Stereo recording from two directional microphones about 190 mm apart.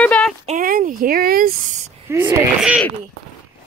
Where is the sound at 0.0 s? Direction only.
5° left (ahead or behind).